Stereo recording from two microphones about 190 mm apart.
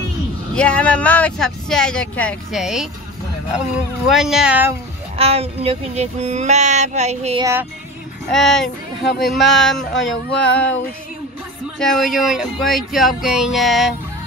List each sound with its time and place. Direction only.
0.6 s speech: 5° left (ahead or behind)
4.1 s speech: centre (ahead or behind)
5.1 s a sound: 30° right (ahead or behind)
8.3 s speech: centre (ahead or behind)
11.8 s speech: centre (ahead or behind)